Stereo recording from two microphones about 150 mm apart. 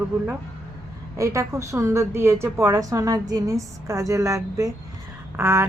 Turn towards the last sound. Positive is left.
turn(degrees=-20)  # may be behind; listen again after turning